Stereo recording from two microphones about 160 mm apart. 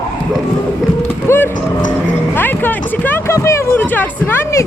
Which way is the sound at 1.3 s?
15° left (ahead or behind).